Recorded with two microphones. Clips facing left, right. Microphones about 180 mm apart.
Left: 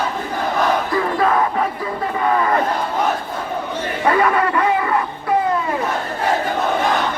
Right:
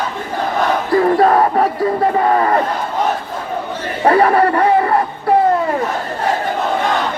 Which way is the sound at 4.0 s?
35° right (ahead or behind).